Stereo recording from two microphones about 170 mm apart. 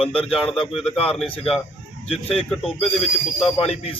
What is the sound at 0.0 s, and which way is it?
Speech, 35° left (ahead or behind).